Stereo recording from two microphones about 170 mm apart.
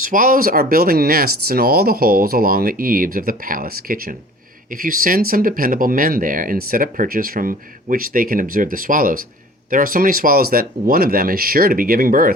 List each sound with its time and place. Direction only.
0.0 s speech: 55° right (ahead or behind)